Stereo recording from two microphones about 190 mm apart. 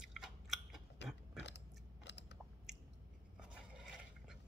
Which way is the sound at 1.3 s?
65° left (ahead or behind).